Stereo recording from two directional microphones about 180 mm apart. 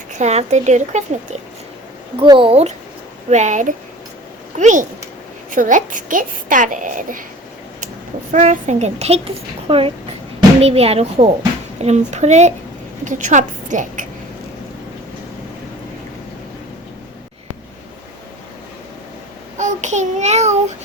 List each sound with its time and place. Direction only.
0.2 s a child's voice: 40° right (ahead or behind)
2.1 s a child's voice: 25° right (ahead or behind); by 7.3 s 45° right (ahead or behind)
8.3 s a child's voice: 40° right (ahead or behind)
19.5 s child singing: 40° right (ahead or behind)